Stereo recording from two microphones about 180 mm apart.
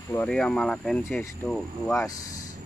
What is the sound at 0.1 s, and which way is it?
Speech, 5° left (ahead or behind).